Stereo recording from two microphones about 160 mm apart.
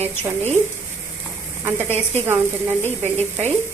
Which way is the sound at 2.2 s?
15° right (ahead or behind).